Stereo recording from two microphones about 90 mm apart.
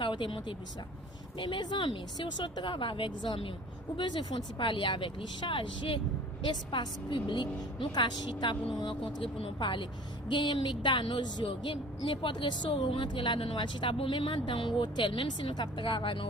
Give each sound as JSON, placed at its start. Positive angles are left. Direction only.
{"t": 0.0, "sound": "a woman's voice", "side_deg": 60}
{"t": 3.9, "sound": "a woman's voice", "side_deg": 55}
{"t": 8.3, "sound": "speech", "side_deg": 70}
{"t": 8.7, "sound": "a woman's voice", "side_deg": 55}
{"t": 9.2, "sound": "a woman's voice", "side_deg": 75}